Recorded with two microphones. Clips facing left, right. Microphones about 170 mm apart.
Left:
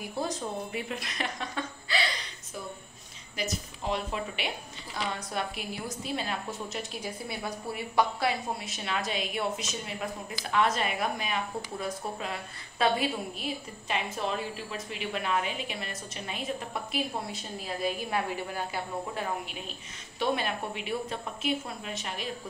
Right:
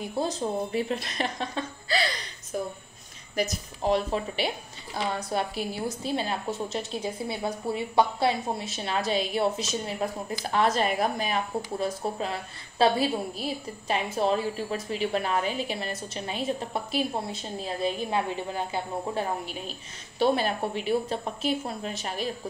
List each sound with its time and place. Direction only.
0.0 s a woman's voice: 25° right (ahead or behind)
3.3 s a woman's voice: 40° right (ahead or behind); by 19.2 s 25° right (ahead or behind)
20.2 s a woman's voice: 35° right (ahead or behind)